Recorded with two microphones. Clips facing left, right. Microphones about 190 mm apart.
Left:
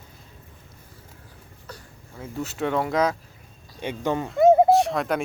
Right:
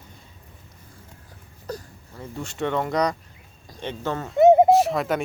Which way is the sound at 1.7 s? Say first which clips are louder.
Right 10 dB; 40° right (ahead or behind).